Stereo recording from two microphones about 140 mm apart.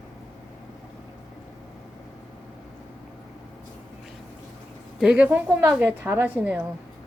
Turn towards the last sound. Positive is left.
turn(degrees=-10)  # may be behind; listen again after turning